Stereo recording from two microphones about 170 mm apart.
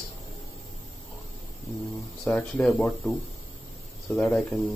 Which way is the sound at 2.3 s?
5° left (ahead or behind).